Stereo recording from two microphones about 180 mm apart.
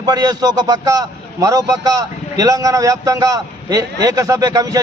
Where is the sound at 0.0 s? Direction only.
20° right (ahead or behind).